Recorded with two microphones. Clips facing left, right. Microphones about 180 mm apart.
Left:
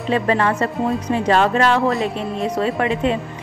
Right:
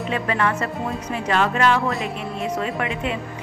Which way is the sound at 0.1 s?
35° left (ahead or behind).